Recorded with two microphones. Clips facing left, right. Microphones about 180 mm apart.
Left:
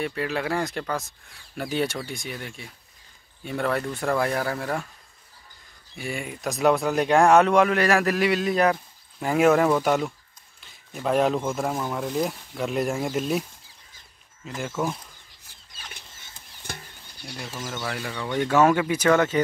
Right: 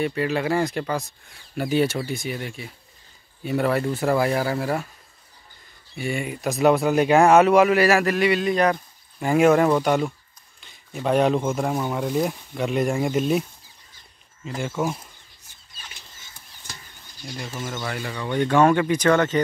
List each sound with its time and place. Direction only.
0.0 s speech: centre (ahead or behind)
5.9 s speech: centre (ahead or behind)
14.6 s speech: 5° right (ahead or behind)
16.6 s a sound: 60° left (ahead or behind)
17.8 s speech: centre (ahead or behind)